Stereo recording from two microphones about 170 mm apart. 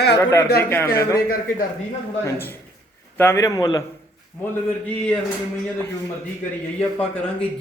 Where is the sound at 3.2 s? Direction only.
15° left (ahead or behind).